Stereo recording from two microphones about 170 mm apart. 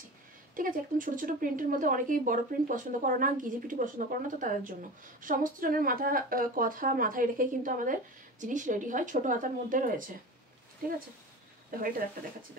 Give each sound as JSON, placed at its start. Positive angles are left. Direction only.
{"t": 0.6, "sound": "speech", "side_deg": -50}